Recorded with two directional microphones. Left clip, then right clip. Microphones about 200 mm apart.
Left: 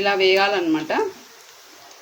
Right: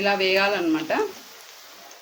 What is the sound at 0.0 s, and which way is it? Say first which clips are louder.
Speech: left 3 dB; 10° left (ahead or behind).